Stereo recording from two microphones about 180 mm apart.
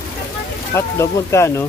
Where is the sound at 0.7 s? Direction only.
15° left (ahead or behind).